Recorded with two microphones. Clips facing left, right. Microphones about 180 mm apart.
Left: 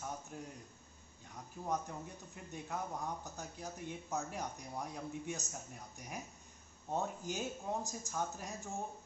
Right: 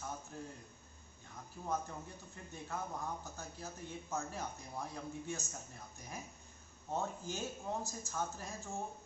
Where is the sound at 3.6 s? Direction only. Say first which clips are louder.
Left 3 dB; 15° left (ahead or behind).